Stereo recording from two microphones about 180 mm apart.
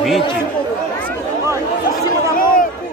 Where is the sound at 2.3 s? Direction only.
50° left (ahead or behind).